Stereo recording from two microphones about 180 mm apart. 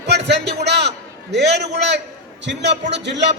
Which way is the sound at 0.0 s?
70° right (ahead or behind).